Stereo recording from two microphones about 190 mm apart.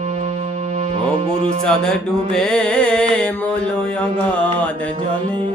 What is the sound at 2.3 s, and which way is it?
Music, 5° left (ahead or behind).